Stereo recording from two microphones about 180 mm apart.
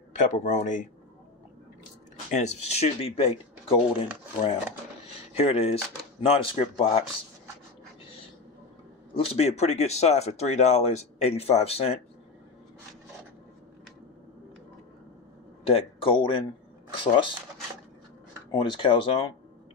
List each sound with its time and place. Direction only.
0.1 s speech: 45° left (ahead or behind)
2.3 s speech: 40° left (ahead or behind)
5.3 s speech: 35° left (ahead or behind)
9.1 s speech: 30° left (ahead or behind)
15.6 s speech: 30° left (ahead or behind)
16.9 s a sound: 30° left (ahead or behind)
18.5 s speech: 25° left (ahead or behind)